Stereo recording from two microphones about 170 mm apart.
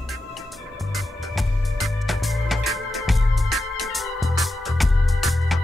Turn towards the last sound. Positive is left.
turn(degrees=0)  # may be behind; listen again after turning